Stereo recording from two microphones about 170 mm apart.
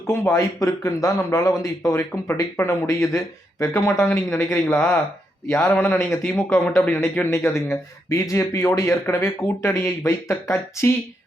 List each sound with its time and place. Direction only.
0.1 s speech: 15° left (ahead or behind)